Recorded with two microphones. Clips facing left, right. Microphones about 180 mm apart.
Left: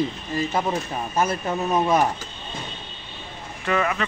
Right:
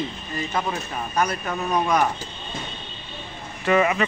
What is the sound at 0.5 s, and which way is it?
Speech, 25° left (ahead or behind).